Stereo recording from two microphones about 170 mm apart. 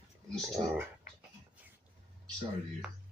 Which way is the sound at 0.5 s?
10° right (ahead or behind).